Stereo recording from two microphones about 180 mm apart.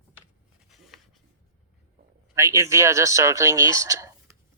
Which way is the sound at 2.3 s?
15° right (ahead or behind).